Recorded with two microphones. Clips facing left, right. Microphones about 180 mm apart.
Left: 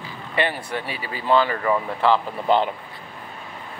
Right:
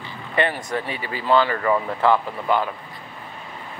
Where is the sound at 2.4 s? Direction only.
25° left (ahead or behind).